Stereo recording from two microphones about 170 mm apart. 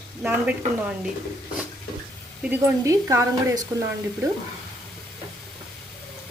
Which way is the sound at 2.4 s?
15° right (ahead or behind).